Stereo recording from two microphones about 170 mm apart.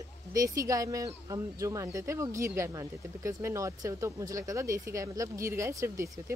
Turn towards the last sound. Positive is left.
turn(degrees=-20)  # may be behind; listen again after turning